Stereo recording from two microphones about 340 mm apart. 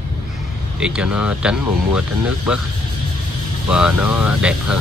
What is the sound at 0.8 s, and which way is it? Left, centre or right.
Speech, centre.